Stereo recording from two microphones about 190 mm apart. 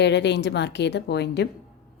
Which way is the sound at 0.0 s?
65° left (ahead or behind).